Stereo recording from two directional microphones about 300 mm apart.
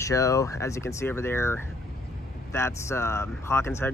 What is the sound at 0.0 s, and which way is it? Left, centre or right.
Speech, centre.